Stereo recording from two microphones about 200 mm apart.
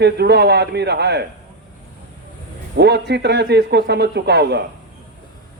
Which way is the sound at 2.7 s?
55° right (ahead or behind).